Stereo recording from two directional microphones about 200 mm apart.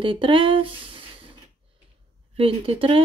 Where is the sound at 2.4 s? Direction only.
25° right (ahead or behind).